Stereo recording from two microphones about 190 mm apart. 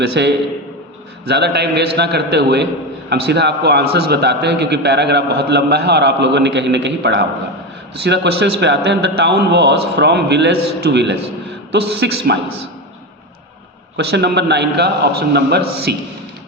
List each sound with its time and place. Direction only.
0.0 s a man's voice: 60° right (ahead or behind)
13.9 s a man's voice: 60° right (ahead or behind)